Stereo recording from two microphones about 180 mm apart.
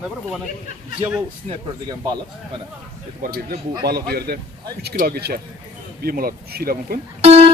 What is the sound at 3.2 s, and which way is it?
Speech, 55° right (ahead or behind).